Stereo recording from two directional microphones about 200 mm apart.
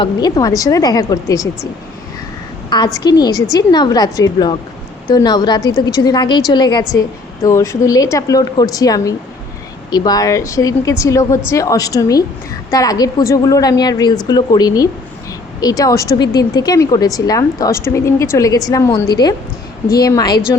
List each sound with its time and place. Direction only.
0.0 s a woman's voice: 20° left (ahead or behind)
2.6 s a woman's voice: 20° left (ahead or behind)